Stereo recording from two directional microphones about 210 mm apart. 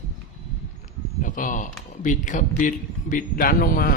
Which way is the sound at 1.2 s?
40° left (ahead or behind).